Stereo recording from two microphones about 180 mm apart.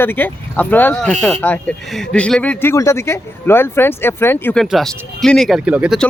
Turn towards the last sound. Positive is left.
turn(degrees=-5)  # may be behind; listen again after turning